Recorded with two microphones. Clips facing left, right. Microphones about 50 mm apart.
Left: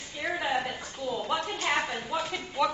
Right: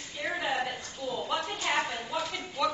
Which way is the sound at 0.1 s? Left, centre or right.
Centre.